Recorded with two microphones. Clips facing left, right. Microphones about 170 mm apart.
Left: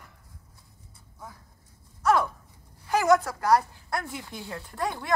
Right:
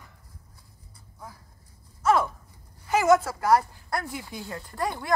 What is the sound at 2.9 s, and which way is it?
Speech, 5° right (ahead or behind).